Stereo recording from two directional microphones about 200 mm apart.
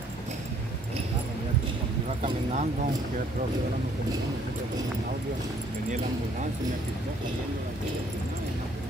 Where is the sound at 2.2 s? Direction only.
35° right (ahead or behind).